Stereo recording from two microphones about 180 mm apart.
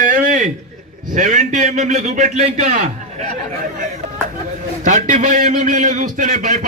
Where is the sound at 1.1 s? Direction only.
45° right (ahead or behind).